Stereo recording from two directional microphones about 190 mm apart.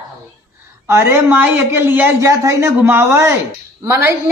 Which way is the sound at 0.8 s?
15° right (ahead or behind).